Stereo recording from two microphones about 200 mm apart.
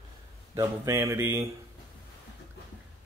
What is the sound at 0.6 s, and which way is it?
Speech, 15° right (ahead or behind).